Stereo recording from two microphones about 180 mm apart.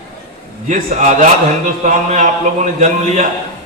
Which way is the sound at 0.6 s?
40° right (ahead or behind).